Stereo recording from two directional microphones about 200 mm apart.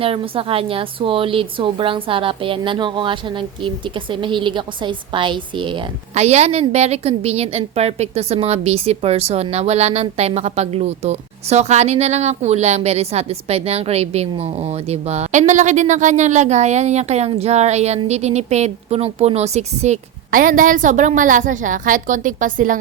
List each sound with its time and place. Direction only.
0.0 s a woman's voice: 30° right (ahead or behind)